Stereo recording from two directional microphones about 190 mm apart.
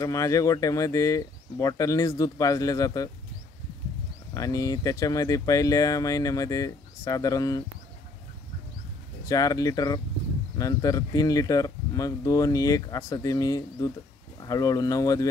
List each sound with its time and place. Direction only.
0.0 s speech: 15° left (ahead or behind)
4.3 s speech: 20° left (ahead or behind)
9.2 s speech: 20° left (ahead or behind)